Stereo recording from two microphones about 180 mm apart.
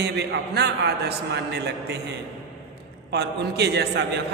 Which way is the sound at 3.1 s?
70° right (ahead or behind).